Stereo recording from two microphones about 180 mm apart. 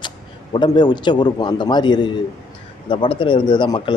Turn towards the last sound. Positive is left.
turn(degrees=25)  # may be behind; listen again after turning